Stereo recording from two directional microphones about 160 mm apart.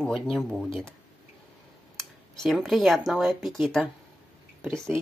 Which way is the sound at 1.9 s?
Centre (ahead or behind).